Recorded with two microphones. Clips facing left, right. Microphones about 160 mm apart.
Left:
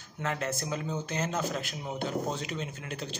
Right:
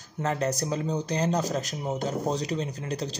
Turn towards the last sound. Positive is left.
turn(degrees=-35)  # may be behind; listen again after turning